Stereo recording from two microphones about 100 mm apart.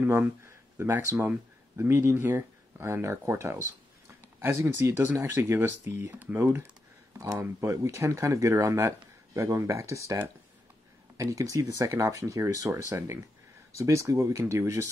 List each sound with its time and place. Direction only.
0.0 s speech: 25° right (ahead or behind)
11.1 s speech: 35° right (ahead or behind)